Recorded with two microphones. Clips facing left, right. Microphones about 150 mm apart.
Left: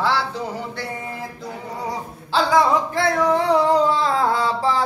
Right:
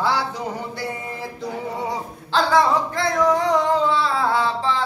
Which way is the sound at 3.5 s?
40° left (ahead or behind).